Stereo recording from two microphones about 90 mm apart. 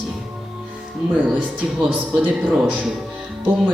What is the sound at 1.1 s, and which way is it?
Speech, 15° right (ahead or behind).